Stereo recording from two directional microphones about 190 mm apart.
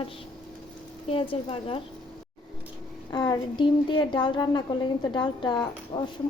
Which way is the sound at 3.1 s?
20° left (ahead or behind).